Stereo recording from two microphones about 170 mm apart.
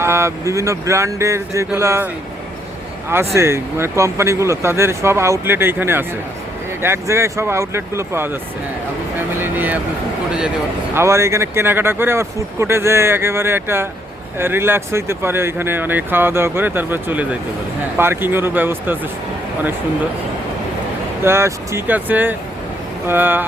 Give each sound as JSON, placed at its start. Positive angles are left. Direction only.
{"t": 0.0, "sound": "speech", "side_deg": -15}
{"t": 3.3, "sound": "speech", "side_deg": -15}
{"t": 9.1, "sound": "vehicle", "side_deg": -10}
{"t": 10.9, "sound": "speech", "side_deg": -15}
{"t": 21.2, "sound": "speech", "side_deg": -15}